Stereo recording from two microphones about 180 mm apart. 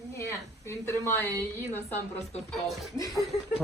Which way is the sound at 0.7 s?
15° left (ahead or behind).